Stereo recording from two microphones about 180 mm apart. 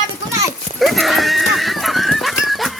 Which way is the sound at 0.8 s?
Centre (ahead or behind).